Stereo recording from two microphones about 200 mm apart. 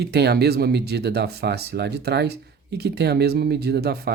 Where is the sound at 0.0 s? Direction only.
55° right (ahead or behind).